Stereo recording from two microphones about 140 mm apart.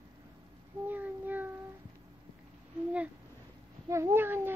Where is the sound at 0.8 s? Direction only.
15° right (ahead or behind).